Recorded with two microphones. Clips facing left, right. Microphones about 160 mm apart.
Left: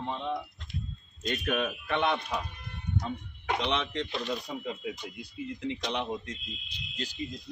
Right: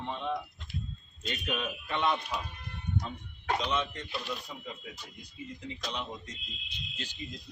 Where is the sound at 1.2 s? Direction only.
50° left (ahead or behind).